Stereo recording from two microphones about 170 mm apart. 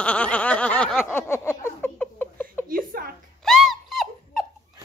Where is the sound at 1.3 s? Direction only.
15° left (ahead or behind).